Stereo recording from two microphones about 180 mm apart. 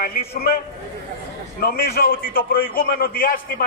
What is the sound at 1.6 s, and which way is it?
A man's voice, 55° left (ahead or behind).